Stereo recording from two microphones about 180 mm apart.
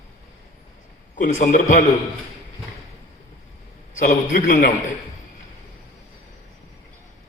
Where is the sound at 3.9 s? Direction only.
45° left (ahead or behind).